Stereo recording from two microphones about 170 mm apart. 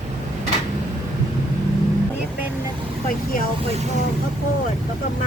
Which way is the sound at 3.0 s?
60° left (ahead or behind).